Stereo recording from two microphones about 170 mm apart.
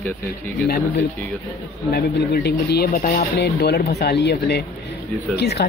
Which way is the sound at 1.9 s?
65° left (ahead or behind).